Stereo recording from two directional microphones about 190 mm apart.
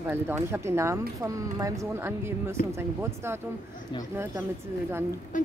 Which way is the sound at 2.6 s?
45° left (ahead or behind).